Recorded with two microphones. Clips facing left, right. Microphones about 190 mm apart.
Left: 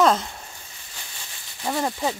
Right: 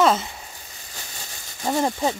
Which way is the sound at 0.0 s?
5° right (ahead or behind).